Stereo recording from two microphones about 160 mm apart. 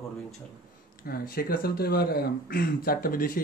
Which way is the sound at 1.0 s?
65° left (ahead or behind).